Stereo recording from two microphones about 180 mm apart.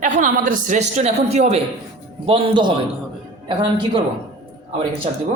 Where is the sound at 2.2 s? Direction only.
25° right (ahead or behind).